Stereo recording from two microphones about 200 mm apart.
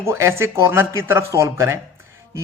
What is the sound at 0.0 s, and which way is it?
Speech, 15° right (ahead or behind).